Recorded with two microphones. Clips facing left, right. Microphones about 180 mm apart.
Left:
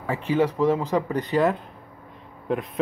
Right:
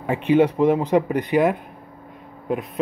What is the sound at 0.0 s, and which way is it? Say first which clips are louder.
A man's voice: right 5 dB; 15° right (ahead or behind).